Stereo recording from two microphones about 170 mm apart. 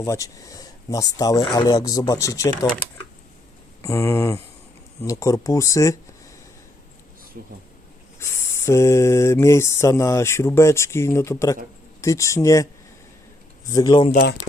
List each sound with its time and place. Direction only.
0.0 s speech: 20° left (ahead or behind)
3.8 s speech: 15° left (ahead or behind)
7.3 s speech: 55° right (ahead or behind)
8.2 s speech: 15° left (ahead or behind)
13.7 s speech: 25° left (ahead or behind)